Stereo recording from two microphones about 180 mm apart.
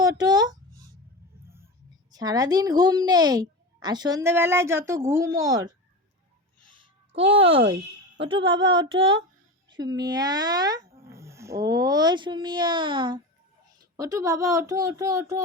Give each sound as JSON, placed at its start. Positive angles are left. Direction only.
{"t": 0.0, "sound": "a sound", "side_deg": -20}
{"t": 2.0, "sound": "a child's voice", "side_deg": -20}
{"t": 7.1, "sound": "a child's voice", "side_deg": -30}